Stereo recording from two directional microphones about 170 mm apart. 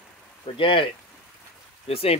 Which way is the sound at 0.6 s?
30° left (ahead or behind).